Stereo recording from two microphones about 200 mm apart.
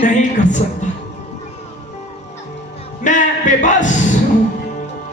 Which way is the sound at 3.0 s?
40° left (ahead or behind).